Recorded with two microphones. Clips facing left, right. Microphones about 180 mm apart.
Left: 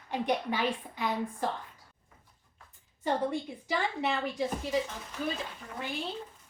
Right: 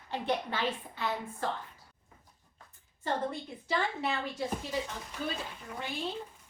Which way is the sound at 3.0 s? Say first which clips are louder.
Left 3 dB; 15° left (ahead or behind).